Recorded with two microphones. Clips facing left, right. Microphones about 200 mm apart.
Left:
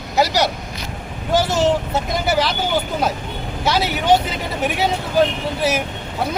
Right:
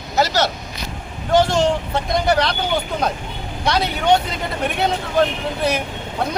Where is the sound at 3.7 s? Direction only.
5° left (ahead or behind).